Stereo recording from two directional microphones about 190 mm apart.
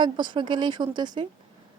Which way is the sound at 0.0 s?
25° right (ahead or behind).